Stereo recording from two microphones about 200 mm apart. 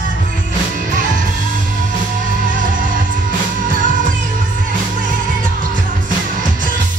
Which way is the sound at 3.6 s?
40° right (ahead or behind).